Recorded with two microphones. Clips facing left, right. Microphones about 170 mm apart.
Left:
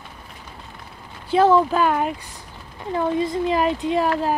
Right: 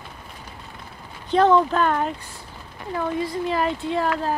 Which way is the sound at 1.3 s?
5° left (ahead or behind).